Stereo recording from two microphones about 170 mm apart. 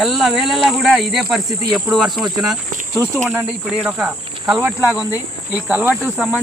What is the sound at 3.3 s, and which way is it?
Cricket, 10° right (ahead or behind).